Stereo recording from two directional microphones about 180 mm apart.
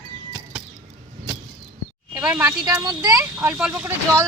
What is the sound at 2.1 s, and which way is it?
Speech, 20° right (ahead or behind).